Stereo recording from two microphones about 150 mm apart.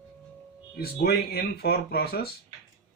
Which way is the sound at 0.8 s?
90° left.